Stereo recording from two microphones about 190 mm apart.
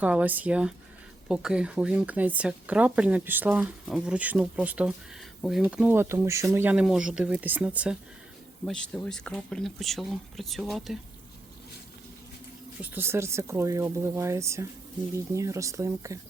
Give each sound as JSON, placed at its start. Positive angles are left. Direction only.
{"t": 0.0, "sound": "speech", "side_deg": -10}
{"t": 8.6, "sound": "speech", "side_deg": 5}
{"t": 12.8, "sound": "speech", "side_deg": -10}